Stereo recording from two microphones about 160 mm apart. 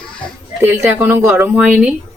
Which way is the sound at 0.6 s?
15° right (ahead or behind).